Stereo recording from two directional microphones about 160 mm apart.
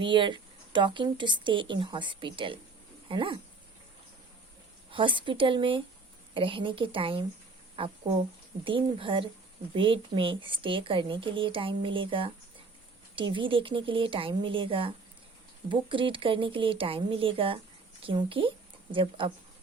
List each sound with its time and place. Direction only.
0.0 s a woman's voice: 30° right (ahead or behind)
4.9 s a woman's voice: 30° right (ahead or behind)